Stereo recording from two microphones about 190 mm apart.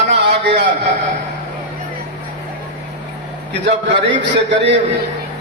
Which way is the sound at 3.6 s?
65° right (ahead or behind).